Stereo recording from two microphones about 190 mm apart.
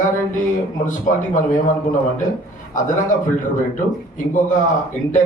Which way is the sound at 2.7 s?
45° left (ahead or behind).